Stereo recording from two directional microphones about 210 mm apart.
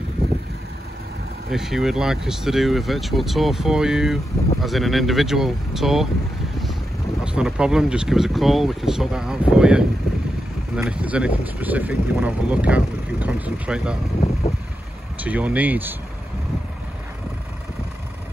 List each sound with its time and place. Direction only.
1.5 s speech: centre (ahead or behind)
7.2 s speech: 5° right (ahead or behind)
14.4 s vehicle: 30° left (ahead or behind)
15.1 s speech: 5° right (ahead or behind)